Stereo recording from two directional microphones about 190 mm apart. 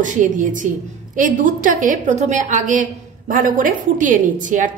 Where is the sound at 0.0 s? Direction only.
40° right (ahead or behind).